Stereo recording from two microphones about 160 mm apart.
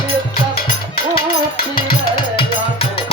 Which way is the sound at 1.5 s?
30° left (ahead or behind).